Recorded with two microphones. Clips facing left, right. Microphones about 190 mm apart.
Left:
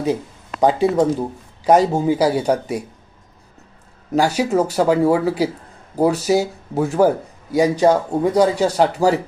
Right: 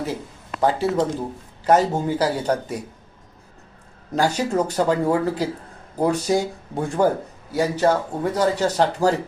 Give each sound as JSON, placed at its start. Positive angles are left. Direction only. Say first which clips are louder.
{"t": 0.6, "sound": "speech", "louder": "left 5 dB", "side_deg": 15}
{"t": 4.1, "sound": "speech", "louder": "left 4 dB", "side_deg": 10}
{"t": 7.5, "sound": "speech", "louder": "left 5 dB", "side_deg": 15}